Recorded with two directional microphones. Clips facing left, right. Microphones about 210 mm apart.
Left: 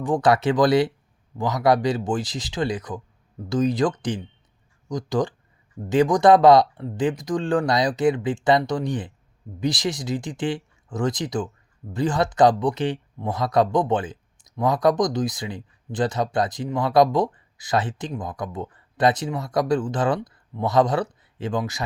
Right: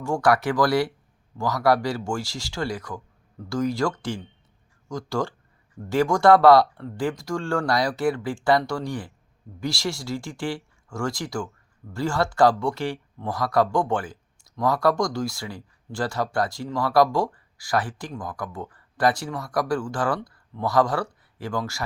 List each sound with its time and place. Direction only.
0.0 s speech: 20° left (ahead or behind)